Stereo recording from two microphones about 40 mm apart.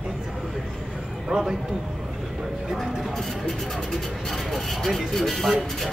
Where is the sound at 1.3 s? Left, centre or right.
Centre.